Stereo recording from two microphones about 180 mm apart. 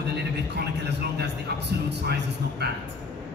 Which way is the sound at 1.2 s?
70° right (ahead or behind).